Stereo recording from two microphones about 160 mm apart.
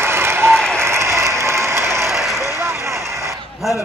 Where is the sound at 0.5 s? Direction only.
5° left (ahead or behind).